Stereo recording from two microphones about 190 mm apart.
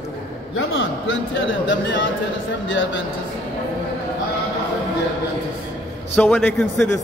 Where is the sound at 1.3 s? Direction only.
75° left (ahead or behind).